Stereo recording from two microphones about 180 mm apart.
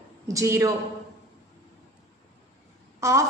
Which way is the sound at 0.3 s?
20° right (ahead or behind).